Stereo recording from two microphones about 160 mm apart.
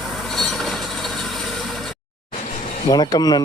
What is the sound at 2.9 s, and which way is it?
Speech, 25° left (ahead or behind).